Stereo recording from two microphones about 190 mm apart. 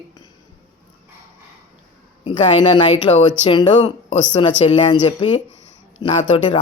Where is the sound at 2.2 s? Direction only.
25° left (ahead or behind).